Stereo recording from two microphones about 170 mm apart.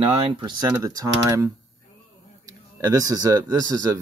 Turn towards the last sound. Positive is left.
turn(degrees=-20)  # may be behind; listen again after turning